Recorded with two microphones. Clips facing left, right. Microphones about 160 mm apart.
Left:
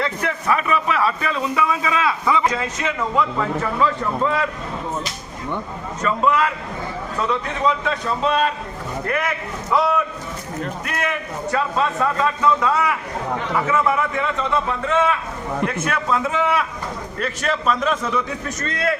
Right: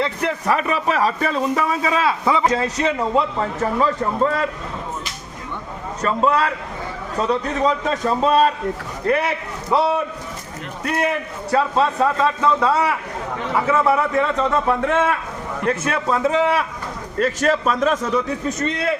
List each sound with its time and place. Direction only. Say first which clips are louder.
0.0 s a man's voice: right 2 dB; 30° right (ahead or behind)
6.0 s a man's voice: right 1 dB; 35° right (ahead or behind)
14.7 s a man's voice: right 2 dB; 55° right (ahead or behind)
15.6 s a man's voice: right 4 dB; 35° right (ahead or behind)
18.4 s a man's voice: right 2 dB; 20° right (ahead or behind)